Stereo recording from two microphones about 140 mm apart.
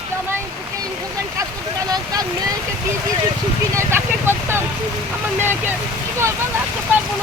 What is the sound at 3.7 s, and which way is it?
Vehicle, 15° right (ahead or behind).